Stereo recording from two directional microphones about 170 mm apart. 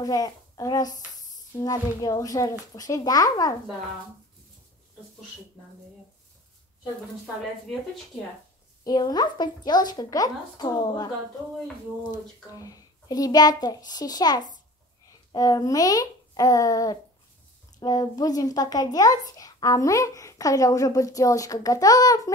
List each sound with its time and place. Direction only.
0.0 s speech: 20° left (ahead or behind)
8.8 s speech: 25° left (ahead or behind)